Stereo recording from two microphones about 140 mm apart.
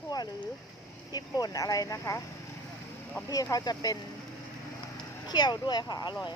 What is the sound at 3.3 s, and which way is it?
Speech, 25° left (ahead or behind).